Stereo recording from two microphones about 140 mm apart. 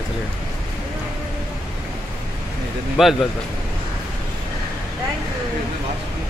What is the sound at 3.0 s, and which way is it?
Speech, 5° right (ahead or behind).